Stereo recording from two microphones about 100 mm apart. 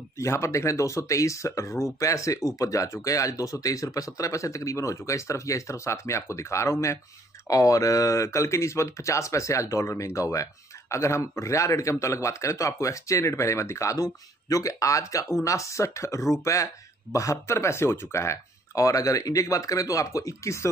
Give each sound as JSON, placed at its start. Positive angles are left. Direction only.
{"t": 0.2, "sound": "speech", "side_deg": 30}